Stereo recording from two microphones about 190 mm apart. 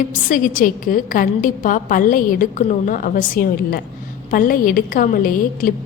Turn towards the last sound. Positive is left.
turn(degrees=45)  # may be behind; listen again after turning